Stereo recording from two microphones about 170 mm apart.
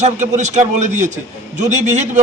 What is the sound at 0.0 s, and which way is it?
A man's voice, 45° right (ahead or behind).